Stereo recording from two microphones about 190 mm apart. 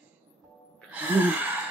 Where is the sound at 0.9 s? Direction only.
10° right (ahead or behind).